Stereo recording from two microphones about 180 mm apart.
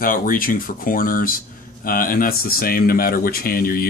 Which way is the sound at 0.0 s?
50° left (ahead or behind).